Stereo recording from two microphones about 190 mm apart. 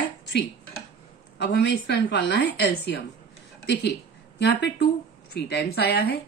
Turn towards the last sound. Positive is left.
turn(degrees=55)  # may be behind; listen again after turning